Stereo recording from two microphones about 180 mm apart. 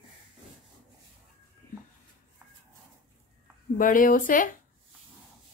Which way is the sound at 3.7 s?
50° left (ahead or behind).